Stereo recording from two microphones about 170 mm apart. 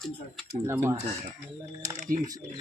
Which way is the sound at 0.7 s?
15° right (ahead or behind).